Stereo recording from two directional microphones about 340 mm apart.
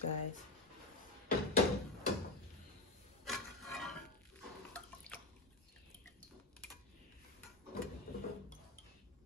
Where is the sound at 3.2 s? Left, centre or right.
Centre.